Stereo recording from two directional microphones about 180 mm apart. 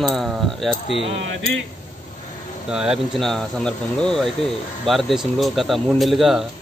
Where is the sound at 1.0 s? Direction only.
90° right.